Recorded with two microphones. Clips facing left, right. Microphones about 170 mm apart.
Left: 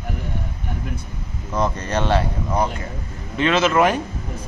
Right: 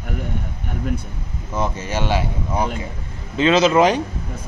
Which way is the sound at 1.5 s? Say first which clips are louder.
Left 2 dB; 5° right (ahead or behind).